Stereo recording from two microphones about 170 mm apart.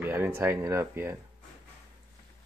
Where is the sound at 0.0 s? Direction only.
15° right (ahead or behind).